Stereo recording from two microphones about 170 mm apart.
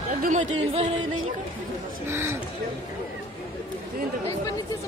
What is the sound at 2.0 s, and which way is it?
Speech, 15° right (ahead or behind).